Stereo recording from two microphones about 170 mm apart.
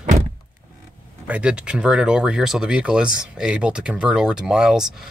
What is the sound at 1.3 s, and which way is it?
Speech, 5° right (ahead or behind).